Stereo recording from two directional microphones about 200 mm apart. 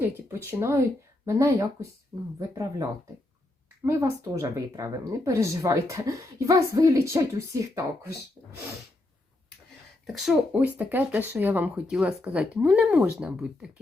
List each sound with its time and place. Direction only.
0.0 s a sound: 15° right (ahead or behind)
1.2 s speech: 15° right (ahead or behind)
3.8 s speech: 10° right (ahead or behind)
10.1 s speech: centre (ahead or behind)